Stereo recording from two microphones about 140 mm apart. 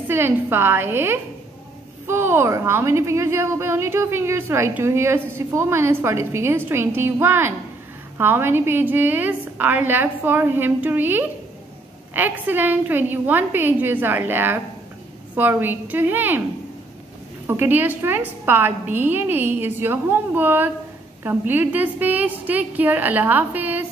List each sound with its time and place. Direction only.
0.1 s a woman's voice: 15° right (ahead or behind)
17.5 s a woman's voice: 15° right (ahead or behind)